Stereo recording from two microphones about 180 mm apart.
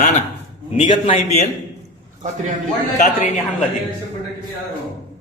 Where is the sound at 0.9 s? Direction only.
35° left (ahead or behind).